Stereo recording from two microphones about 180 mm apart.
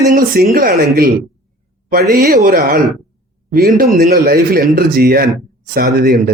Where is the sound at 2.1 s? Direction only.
60° right (ahead or behind).